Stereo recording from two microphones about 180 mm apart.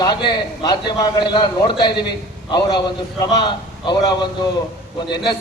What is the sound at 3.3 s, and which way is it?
Speech, 25° left (ahead or behind).